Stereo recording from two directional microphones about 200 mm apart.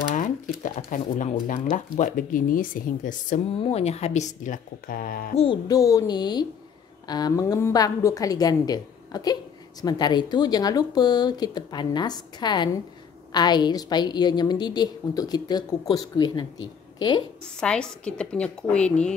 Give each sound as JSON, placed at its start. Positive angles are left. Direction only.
{"t": 0.1, "sound": "speech", "side_deg": 40}
{"t": 5.3, "sound": "a woman's voice", "side_deg": 30}
{"t": 5.7, "sound": "a woman's voice", "side_deg": 15}
{"t": 17.6, "sound": "a woman's voice", "side_deg": 5}